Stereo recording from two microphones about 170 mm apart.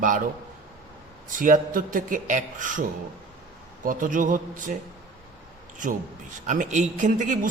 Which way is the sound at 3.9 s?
50° right (ahead or behind).